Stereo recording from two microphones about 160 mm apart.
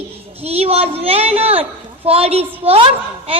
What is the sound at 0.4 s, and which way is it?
A woman's voice, 40° right (ahead or behind).